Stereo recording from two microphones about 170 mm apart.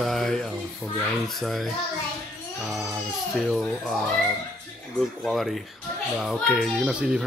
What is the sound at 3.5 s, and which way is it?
Speech, centre (ahead or behind).